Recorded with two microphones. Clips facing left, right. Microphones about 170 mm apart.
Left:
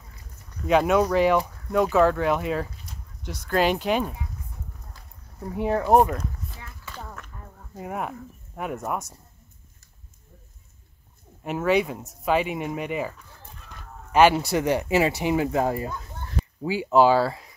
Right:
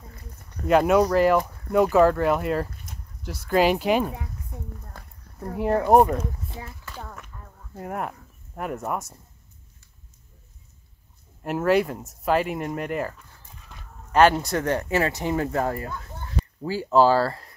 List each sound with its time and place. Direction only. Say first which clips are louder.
0.7 s speech: right 2 dB; 5° right (ahead or behind)
5.6 s speech: right 2 dB; centre (ahead or behind)
6.8 s a sound: even; centre (ahead or behind)
7.7 s speech: even; 5° left (ahead or behind)
11.4 s speech: right 1 dB; 5° right (ahead or behind)
14.1 s speech: even; 5° left (ahead or behind)
17.2 s speech: even; 5° left (ahead or behind)